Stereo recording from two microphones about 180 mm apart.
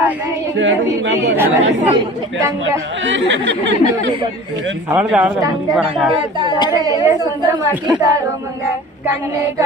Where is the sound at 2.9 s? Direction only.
90° right.